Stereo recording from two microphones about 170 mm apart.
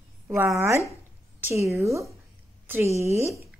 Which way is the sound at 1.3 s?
10° right (ahead or behind).